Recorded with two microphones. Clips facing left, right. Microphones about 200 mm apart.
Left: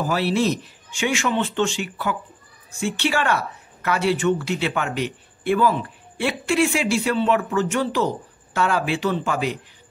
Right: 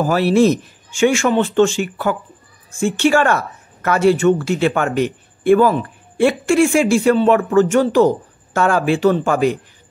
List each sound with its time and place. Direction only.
0.0 s a woman's voice: 50° right (ahead or behind)